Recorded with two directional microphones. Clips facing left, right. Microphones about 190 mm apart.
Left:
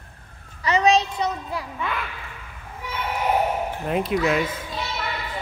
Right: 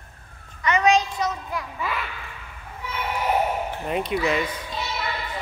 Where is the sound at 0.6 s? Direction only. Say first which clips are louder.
Left 1 dB; 30° left (ahead or behind).